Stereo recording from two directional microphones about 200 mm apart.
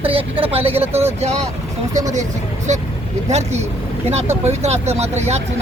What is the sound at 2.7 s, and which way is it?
Speech, 35° right (ahead or behind).